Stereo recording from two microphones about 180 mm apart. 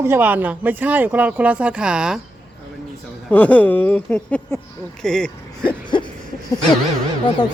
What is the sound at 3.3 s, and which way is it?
Speech, 10° left (ahead or behind).